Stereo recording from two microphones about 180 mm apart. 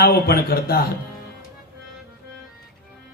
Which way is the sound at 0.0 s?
60° left (ahead or behind).